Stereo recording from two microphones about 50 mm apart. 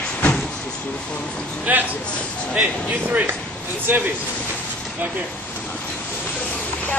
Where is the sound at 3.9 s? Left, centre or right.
Right.